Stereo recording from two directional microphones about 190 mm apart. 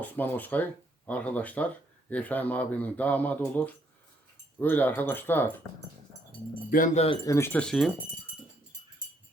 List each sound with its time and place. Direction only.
0.0 s speech: 10° left (ahead or behind)
6.7 s speech: 45° left (ahead or behind)
7.3 s speech: 15° left (ahead or behind)